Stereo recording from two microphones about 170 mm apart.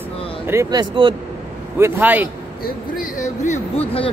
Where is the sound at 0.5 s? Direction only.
20° right (ahead or behind).